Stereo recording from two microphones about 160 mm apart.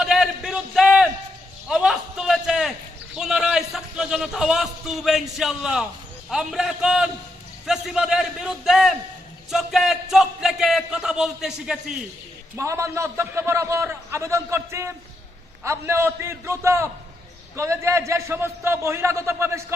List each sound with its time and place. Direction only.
0.0 s a sound: 5° right (ahead or behind)
3.2 s a man's voice: 5° right (ahead or behind)
12.5 s a man's voice: 15° right (ahead or behind)